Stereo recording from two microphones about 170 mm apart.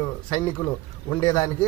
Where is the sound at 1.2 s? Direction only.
25° left (ahead or behind).